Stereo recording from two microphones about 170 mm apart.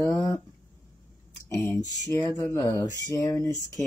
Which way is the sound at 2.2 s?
15° left (ahead or behind).